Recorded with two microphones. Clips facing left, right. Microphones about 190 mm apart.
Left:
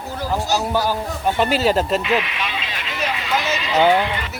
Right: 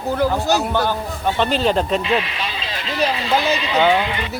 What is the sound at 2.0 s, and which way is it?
Vehicle, 30° right (ahead or behind).